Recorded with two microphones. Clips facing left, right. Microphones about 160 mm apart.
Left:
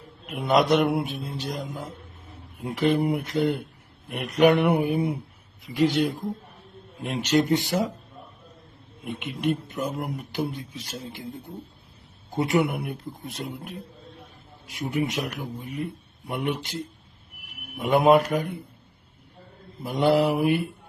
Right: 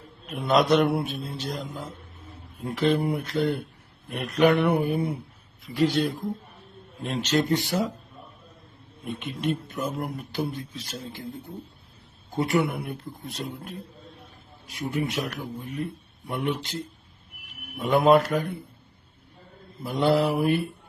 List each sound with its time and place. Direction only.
0.3 s speech: 15° left (ahead or behind)
9.1 s a man's voice: 15° left (ahead or behind)
12.3 s speech: 20° left (ahead or behind)
19.8 s speech: 15° left (ahead or behind)